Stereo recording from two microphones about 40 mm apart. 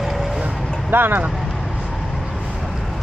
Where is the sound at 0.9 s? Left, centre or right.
Right.